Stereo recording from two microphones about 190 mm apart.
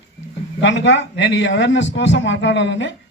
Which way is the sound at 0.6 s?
70° left (ahead or behind).